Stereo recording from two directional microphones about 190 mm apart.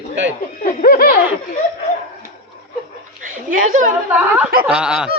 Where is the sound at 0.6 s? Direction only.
45° left (ahead or behind).